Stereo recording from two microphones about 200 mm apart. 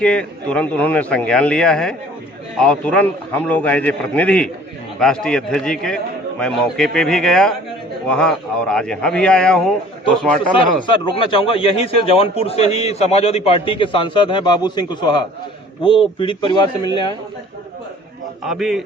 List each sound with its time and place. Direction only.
0.0 s a man's voice: 5° left (ahead or behind)
10.6 s a man's voice: 25° left (ahead or behind)
18.4 s a man's voice: centre (ahead or behind)